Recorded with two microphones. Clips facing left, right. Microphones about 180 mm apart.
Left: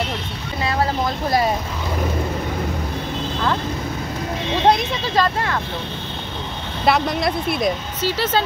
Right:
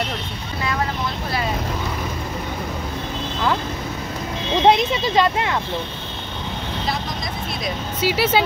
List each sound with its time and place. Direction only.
4.6 s speech: 15° right (ahead or behind)
6.9 s speech: 65° left (ahead or behind)
8.0 s speech: 10° right (ahead or behind)